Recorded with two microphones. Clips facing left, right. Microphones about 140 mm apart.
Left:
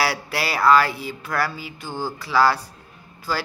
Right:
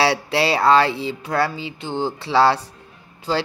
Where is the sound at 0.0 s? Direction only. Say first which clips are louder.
Right 5 dB; 25° right (ahead or behind).